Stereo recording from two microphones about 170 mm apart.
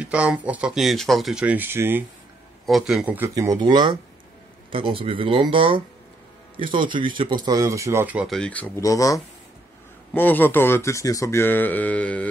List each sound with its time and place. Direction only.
0.0 s speech: 5° right (ahead or behind)
2.6 s speech: centre (ahead or behind)
3.3 s speech: 25° right (ahead or behind)
8.3 s speech: 5° left (ahead or behind)